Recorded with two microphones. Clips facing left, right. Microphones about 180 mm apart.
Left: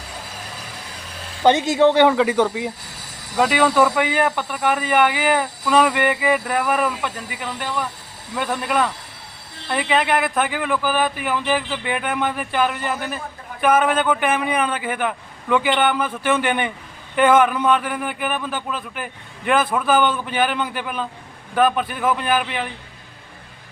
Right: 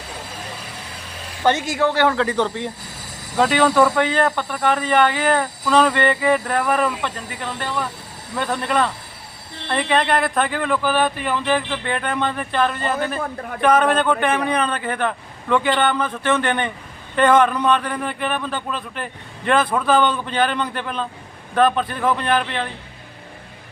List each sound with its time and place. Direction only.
1.5 s a man's voice: 20° left (ahead or behind)